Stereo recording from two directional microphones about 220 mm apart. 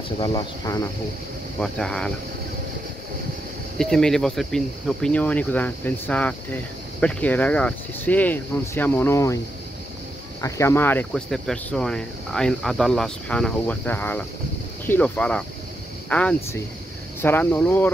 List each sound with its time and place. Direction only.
0.2 s speech: 20° left (ahead or behind)
1.6 s speech: 5° left (ahead or behind)
3.7 s speech: centre (ahead or behind)
10.4 s speech: 10° left (ahead or behind)